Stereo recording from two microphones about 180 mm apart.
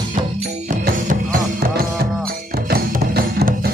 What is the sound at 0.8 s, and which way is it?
Music, 55° right (ahead or behind).